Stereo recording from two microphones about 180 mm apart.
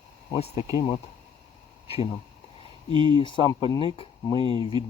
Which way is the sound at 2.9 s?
25° right (ahead or behind).